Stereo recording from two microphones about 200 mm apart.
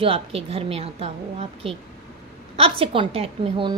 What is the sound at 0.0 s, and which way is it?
A woman's voice, 30° right (ahead or behind).